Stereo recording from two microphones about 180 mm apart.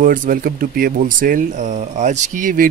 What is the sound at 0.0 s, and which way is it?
Speech, 50° right (ahead or behind).